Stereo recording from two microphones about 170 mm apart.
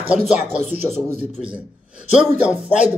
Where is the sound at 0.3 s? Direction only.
10° right (ahead or behind).